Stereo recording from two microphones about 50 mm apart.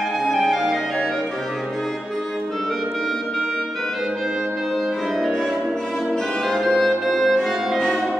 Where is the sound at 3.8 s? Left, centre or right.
Centre.